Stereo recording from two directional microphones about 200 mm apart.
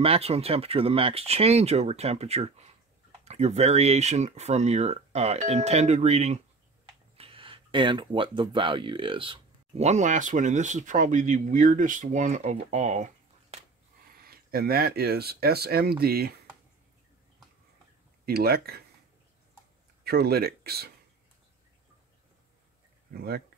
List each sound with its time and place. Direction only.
0.0 s speech: 30° right (ahead or behind)
14.2 s speech: 50° right (ahead or behind)
18.2 s speech: 50° right (ahead or behind)
20.0 s speech: 50° right (ahead or behind)
23.1 s speech: 50° right (ahead or behind)